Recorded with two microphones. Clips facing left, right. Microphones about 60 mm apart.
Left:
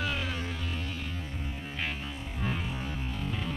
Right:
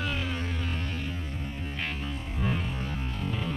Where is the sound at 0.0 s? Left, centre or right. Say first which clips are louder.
Right 1 dB; centre.